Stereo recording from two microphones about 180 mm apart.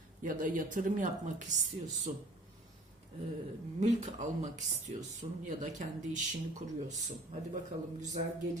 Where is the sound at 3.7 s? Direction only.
40° right (ahead or behind).